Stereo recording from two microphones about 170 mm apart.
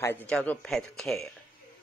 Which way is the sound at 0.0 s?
10° left (ahead or behind).